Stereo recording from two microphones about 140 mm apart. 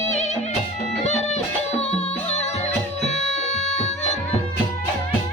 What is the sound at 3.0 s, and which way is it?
Music, 55° left (ahead or behind).